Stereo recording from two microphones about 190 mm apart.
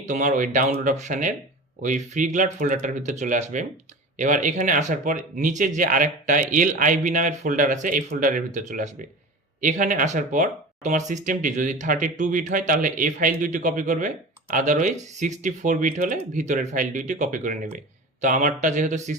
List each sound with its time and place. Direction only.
0.0 s speech: 40° right (ahead or behind)